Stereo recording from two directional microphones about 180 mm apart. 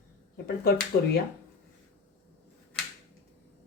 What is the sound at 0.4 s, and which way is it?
Speech, 60° left (ahead or behind).